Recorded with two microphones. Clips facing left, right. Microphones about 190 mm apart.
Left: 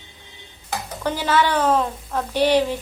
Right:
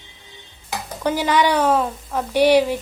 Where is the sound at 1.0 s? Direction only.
15° right (ahead or behind).